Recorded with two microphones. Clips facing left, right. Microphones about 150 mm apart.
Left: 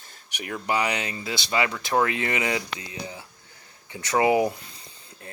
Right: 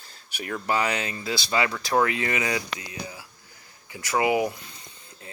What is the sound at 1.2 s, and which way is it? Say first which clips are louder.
Speech: right 2 dB; 40° right (ahead or behind).